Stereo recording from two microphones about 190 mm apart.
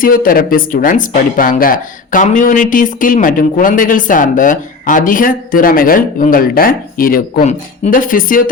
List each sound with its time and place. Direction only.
0.0 s speech: 45° left (ahead or behind)